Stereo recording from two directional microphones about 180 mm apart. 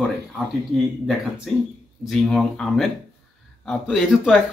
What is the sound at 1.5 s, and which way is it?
Speech, centre (ahead or behind).